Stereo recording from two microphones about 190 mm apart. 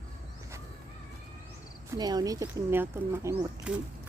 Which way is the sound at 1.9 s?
20° right (ahead or behind).